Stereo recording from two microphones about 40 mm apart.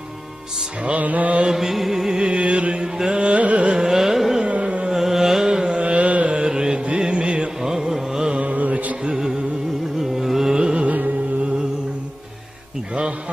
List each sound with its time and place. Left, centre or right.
0.8 s music: right
1.5 s music: centre
2.1 s music: right
3.1 s carnatic music: right
3.7 s carnatic music: centre
4.5 s carnatic music: right
4.9 s carnatic music: centre
5.8 s carnatic music: right
6.4 s music: centre
7.9 s carnatic music: centre
8.4 s mantra: right
9.9 s carnatic music: centre
10.6 s music: right